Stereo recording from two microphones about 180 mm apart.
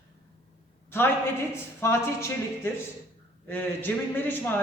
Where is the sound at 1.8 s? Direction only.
15° left (ahead or behind).